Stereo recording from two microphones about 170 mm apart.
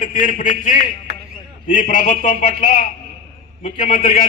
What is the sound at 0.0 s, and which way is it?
A man's voice, 50° left (ahead or behind).